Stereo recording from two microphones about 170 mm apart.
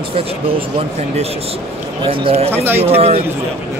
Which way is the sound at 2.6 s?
10° right (ahead or behind).